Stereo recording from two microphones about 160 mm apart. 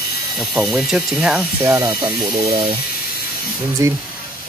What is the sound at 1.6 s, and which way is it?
Speech, 20° right (ahead or behind).